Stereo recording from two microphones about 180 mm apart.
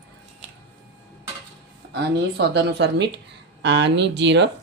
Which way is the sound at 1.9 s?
70° right (ahead or behind).